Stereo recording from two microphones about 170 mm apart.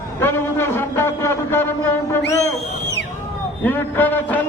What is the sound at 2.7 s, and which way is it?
Music, 90° left.